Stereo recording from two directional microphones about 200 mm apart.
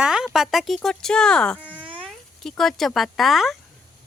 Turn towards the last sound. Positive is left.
turn(degrees=0)  # may be behind; listen again after turning